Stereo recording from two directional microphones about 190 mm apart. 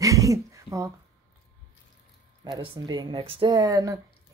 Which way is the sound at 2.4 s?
25° right (ahead or behind).